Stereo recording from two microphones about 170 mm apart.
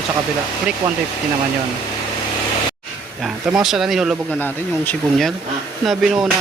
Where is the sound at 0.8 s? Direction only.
20° right (ahead or behind).